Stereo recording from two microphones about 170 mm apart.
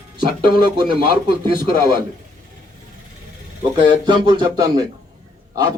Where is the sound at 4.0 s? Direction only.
25° right (ahead or behind).